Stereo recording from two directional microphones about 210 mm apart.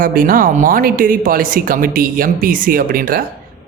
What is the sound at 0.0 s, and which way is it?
Speech, 40° right (ahead or behind).